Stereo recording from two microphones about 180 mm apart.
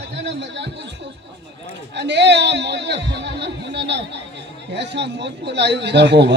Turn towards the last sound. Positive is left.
turn(degrees=-70)  # may be behind; listen again after turning